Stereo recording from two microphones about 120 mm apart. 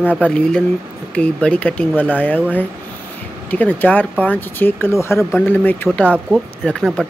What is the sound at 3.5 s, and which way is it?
Speech, 15° left (ahead or behind).